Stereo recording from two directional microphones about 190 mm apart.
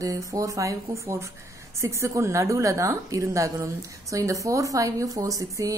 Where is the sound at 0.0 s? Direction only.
15° right (ahead or behind).